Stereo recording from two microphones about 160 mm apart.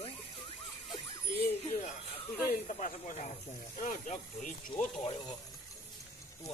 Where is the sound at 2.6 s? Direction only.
50° left (ahead or behind).